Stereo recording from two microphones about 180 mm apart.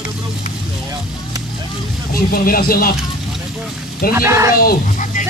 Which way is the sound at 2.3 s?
55° left (ahead or behind).